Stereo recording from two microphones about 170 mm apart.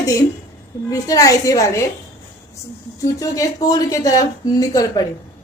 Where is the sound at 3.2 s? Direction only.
20° left (ahead or behind).